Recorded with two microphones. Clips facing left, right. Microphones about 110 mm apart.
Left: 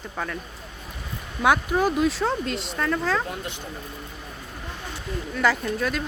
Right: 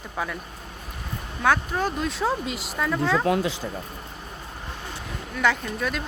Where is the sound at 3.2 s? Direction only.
90° right.